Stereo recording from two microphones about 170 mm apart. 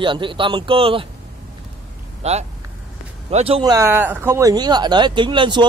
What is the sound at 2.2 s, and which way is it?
Speech, 40° right (ahead or behind).